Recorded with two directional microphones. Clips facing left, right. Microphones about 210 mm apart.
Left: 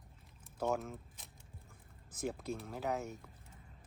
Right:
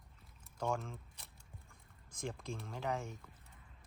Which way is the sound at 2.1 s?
5° left (ahead or behind).